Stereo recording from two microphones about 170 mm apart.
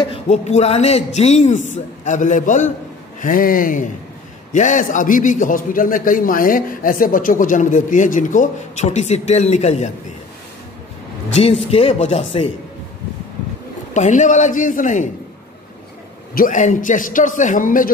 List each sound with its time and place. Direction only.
0.0 s a man's voice: 35° left (ahead or behind)
11.3 s speech: 35° left (ahead or behind)
13.9 s a man's voice: 45° left (ahead or behind)
16.3 s a man's voice: 50° left (ahead or behind)